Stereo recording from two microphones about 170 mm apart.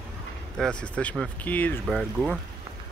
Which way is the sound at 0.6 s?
5° left (ahead or behind).